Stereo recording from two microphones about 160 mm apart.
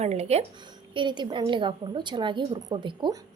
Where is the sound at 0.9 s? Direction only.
30° right (ahead or behind).